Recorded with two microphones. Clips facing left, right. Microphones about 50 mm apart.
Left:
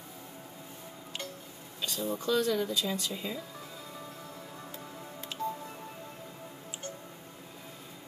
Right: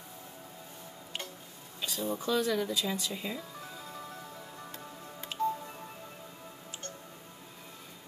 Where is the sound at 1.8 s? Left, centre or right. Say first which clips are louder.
Even; centre.